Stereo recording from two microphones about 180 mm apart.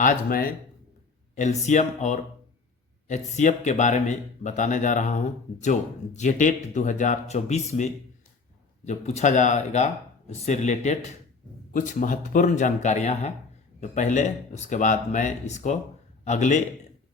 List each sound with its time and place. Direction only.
0.0 s speech: 50° left (ahead or behind)
1.4 s speech: 40° left (ahead or behind)